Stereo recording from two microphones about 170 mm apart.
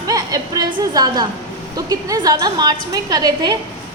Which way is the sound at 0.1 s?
20° right (ahead or behind).